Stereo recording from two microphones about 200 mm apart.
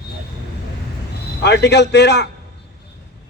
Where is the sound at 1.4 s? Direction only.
60° left (ahead or behind).